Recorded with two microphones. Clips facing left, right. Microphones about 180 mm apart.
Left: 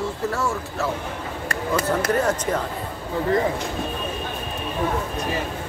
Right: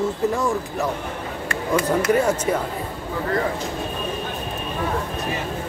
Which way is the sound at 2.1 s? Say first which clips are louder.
Right 3 dB; 10° right (ahead or behind).